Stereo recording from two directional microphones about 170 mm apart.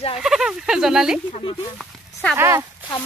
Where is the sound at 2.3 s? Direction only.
15° right (ahead or behind).